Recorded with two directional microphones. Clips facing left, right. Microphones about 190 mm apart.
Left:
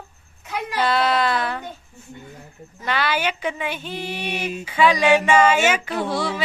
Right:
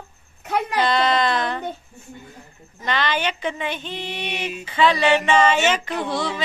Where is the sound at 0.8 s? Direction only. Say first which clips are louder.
Left 1 dB; 5° left (ahead or behind).